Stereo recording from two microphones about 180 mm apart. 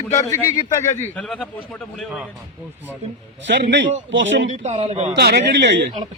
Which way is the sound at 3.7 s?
90° right.